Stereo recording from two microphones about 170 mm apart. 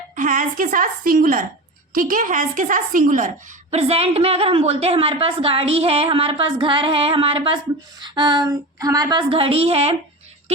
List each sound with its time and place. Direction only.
0.2 s a woman's voice: 50° right (ahead or behind)
3.7 s a woman's voice: 35° right (ahead or behind)